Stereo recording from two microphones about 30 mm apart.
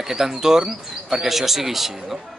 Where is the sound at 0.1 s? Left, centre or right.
Centre.